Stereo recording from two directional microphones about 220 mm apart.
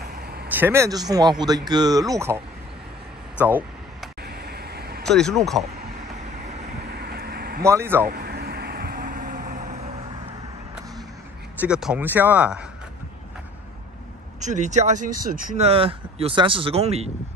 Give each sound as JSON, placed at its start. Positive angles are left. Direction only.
{"t": 0.1, "sound": "vehicle", "side_deg": -45}
{"t": 0.5, "sound": "speech", "side_deg": -10}
{"t": 3.3, "sound": "vehicle", "side_deg": -5}
{"t": 4.2, "sound": "vehicle", "side_deg": -45}
{"t": 5.0, "sound": "speech", "side_deg": 0}
{"t": 7.0, "sound": "a sound", "side_deg": -45}
{"t": 7.6, "sound": "speech", "side_deg": -10}
{"t": 8.1, "sound": "vehicle", "side_deg": -45}
{"t": 11.6, "sound": "speech", "side_deg": -5}
{"t": 14.4, "sound": "speech", "side_deg": -35}